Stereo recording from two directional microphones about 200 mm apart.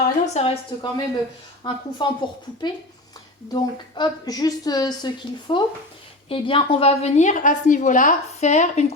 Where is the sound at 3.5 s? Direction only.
20° left (ahead or behind).